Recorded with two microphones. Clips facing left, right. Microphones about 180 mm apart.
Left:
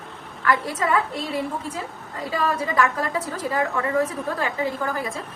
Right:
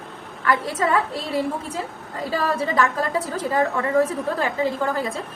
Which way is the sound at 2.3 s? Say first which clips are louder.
Right 1 dB; 30° right (ahead or behind).